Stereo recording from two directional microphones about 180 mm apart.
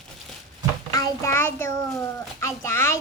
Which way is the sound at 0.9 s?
20° left (ahead or behind).